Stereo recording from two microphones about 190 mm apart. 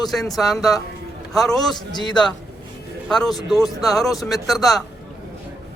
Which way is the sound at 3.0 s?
Centre (ahead or behind).